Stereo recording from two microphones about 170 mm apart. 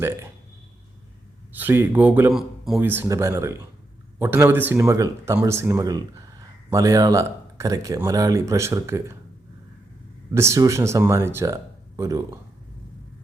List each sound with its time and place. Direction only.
1.5 s speech: 10° right (ahead or behind)
10.3 s speech: 15° right (ahead or behind)